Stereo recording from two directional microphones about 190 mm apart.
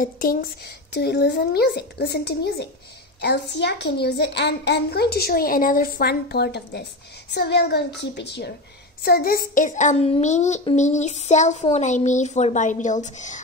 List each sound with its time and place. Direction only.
0.0 s a child's voice: 50° left (ahead or behind)
9.0 s speech: 55° left (ahead or behind)